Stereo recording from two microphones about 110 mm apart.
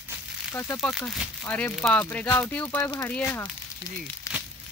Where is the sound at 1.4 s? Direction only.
15° left (ahead or behind).